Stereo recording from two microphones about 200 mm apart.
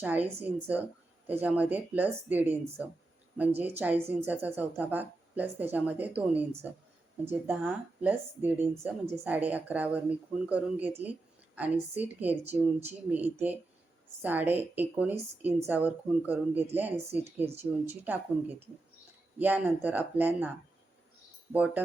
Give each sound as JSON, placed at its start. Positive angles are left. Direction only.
{"t": 0.0, "sound": "a woman's voice", "side_deg": -10}
{"t": 17.4, "sound": "speech", "side_deg": -30}
{"t": 17.8, "sound": "a woman's voice", "side_deg": -10}
{"t": 19.4, "sound": "a woman's voice", "side_deg": -10}
{"t": 21.5, "sound": "a woman's voice", "side_deg": -5}